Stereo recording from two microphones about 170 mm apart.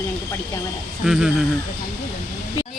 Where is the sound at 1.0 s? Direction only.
5° right (ahead or behind).